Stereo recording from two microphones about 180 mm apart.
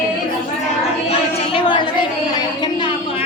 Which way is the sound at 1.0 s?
30° left (ahead or behind).